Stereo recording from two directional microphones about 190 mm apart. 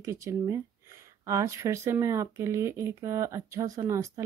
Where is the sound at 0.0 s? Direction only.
15° right (ahead or behind).